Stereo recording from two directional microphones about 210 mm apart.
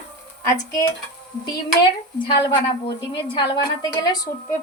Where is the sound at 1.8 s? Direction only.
25° left (ahead or behind).